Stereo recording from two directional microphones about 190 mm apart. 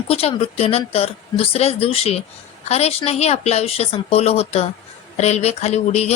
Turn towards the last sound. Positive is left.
turn(degrees=35)  # may be behind; listen again after turning